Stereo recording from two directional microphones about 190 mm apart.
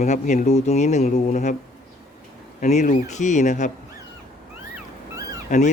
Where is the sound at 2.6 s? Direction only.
40° left (ahead or behind).